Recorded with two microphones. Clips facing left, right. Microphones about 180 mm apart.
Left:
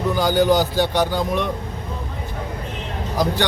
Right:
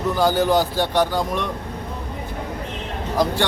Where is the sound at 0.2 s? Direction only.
Centre (ahead or behind).